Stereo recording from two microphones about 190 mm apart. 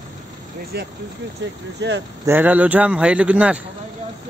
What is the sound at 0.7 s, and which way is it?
Speech, 60° right (ahead or behind).